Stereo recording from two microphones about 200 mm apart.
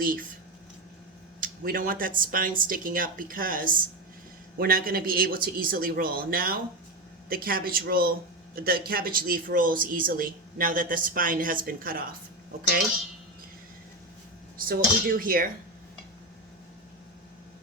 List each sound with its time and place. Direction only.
0.0 s speech: 45° right (ahead or behind)
1.4 s speech: 45° right (ahead or behind)
14.6 s speech: 45° right (ahead or behind)